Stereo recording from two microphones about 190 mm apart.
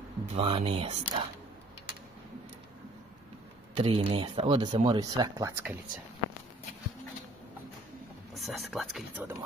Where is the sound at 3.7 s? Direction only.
30° right (ahead or behind).